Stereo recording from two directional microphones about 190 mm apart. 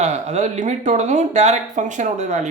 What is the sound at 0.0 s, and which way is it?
Speech, 35° right (ahead or behind).